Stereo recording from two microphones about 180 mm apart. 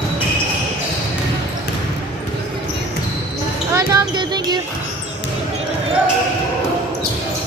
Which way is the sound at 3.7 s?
20° right (ahead or behind).